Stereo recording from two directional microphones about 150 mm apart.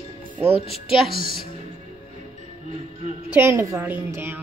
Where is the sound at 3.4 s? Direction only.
20° right (ahead or behind).